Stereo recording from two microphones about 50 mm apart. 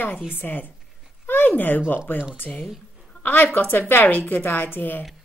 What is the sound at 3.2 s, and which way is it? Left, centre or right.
A woman's voice, left.